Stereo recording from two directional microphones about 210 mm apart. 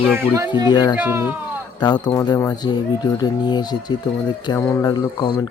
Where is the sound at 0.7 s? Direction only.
20° left (ahead or behind).